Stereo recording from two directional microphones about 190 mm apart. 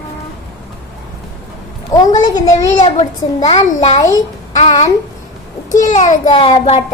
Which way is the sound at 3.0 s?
35° left (ahead or behind).